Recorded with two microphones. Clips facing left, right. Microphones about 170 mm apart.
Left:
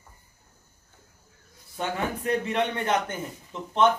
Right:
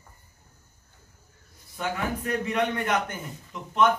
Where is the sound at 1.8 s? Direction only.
30° left (ahead or behind).